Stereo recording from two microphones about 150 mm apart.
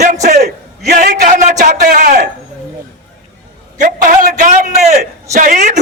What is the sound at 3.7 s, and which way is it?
A man's voice, 65° right (ahead or behind).